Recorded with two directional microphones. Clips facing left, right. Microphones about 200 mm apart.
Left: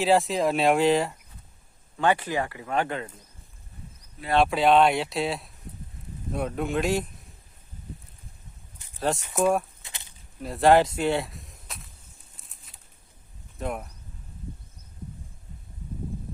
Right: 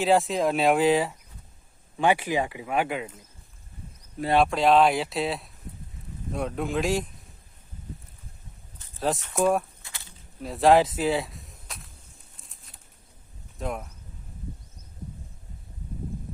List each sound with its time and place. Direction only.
0.0 s speech: centre (ahead or behind)
2.0 s speech: 15° right (ahead or behind)
4.4 s speech: centre (ahead or behind)
9.0 s speech: centre (ahead or behind)
9.8 s a sound: 20° left (ahead or behind)
10.4 s speech: centre (ahead or behind)
12.4 s bird: centre (ahead or behind)
13.6 s speech: centre (ahead or behind)